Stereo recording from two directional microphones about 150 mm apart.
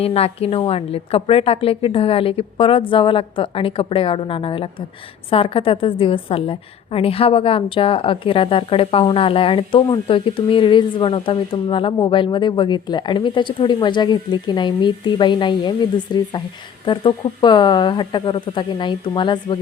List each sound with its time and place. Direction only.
0.0 s a woman's voice: 40° left (ahead or behind)